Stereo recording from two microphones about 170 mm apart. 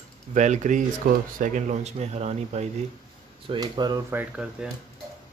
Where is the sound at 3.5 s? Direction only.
25° right (ahead or behind).